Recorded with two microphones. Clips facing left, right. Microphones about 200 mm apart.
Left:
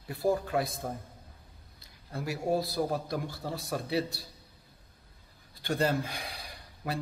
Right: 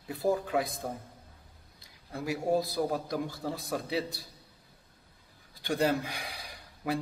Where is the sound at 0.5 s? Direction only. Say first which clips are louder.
Even; 15° right (ahead or behind).